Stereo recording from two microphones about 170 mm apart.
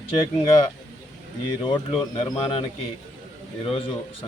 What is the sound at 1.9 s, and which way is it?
Speech, 30° left (ahead or behind).